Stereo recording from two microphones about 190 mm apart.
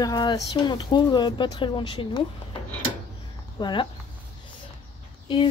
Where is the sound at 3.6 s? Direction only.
25° left (ahead or behind).